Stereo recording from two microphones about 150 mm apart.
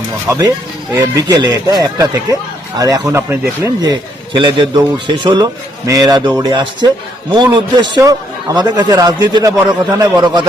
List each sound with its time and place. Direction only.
0.3 s a man's voice: 20° right (ahead or behind)